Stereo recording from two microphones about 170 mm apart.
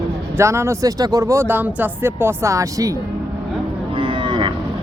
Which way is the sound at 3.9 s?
30° right (ahead or behind).